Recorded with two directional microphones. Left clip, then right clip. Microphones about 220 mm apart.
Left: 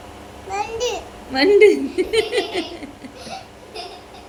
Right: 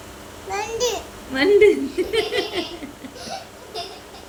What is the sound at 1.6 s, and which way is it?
Speech, 20° left (ahead or behind).